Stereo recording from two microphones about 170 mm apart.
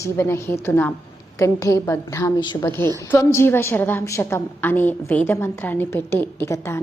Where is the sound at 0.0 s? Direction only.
15° left (ahead or behind).